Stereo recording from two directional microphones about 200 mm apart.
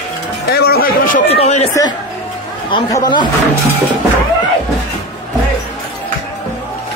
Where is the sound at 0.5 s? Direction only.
50° left (ahead or behind).